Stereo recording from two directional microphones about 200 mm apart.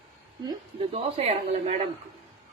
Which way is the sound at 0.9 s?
30° right (ahead or behind).